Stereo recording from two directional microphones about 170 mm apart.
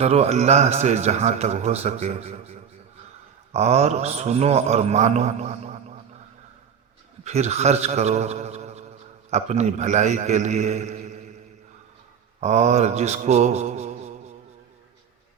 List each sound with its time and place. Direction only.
0.0 s a man's voice: 35° right (ahead or behind)
7.3 s a man's voice: 40° right (ahead or behind)
12.4 s a man's voice: 40° right (ahead or behind)